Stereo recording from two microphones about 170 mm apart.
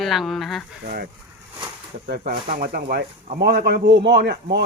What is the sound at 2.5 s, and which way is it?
Speech, 60° right (ahead or behind).